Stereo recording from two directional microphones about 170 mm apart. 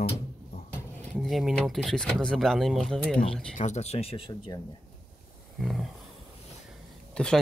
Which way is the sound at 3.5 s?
45° left (ahead or behind).